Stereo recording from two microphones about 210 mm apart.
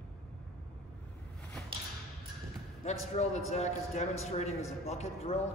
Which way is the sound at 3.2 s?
30° left (ahead or behind).